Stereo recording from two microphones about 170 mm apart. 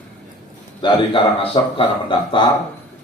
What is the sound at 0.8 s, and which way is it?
Speech, 30° left (ahead or behind).